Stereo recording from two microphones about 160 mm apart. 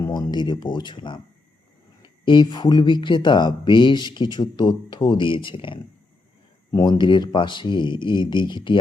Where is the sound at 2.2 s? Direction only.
30° left (ahead or behind).